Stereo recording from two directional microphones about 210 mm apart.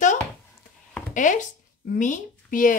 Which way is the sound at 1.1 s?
35° left (ahead or behind).